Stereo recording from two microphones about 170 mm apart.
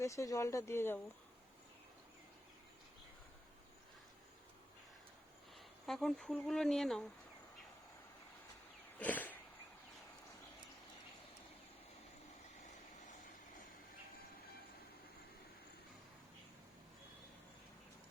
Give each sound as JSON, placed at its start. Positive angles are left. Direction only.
{"t": 0.0, "sound": "speech", "side_deg": 20}
{"t": 5.5, "sound": "speech", "side_deg": 0}
{"t": 9.0, "sound": "a sound", "side_deg": 10}